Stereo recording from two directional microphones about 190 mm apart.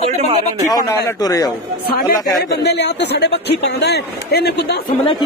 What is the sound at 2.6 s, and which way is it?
Speech, 60° left (ahead or behind).